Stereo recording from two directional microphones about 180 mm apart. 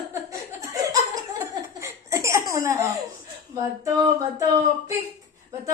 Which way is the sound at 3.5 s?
20° right (ahead or behind).